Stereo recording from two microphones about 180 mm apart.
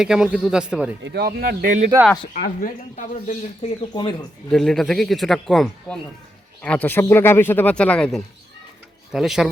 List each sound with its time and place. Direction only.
0.0 s a man's voice: 5° right (ahead or behind)
1.0 s a man's voice: 65° right (ahead or behind); by 1.9 s 45° right (ahead or behind)
2.4 s speech: 50° left (ahead or behind)
3.8 s speech: 25° left (ahead or behind)
4.4 s a man's voice: centre (ahead or behind)